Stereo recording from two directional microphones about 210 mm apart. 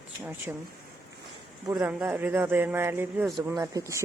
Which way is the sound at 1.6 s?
15° right (ahead or behind).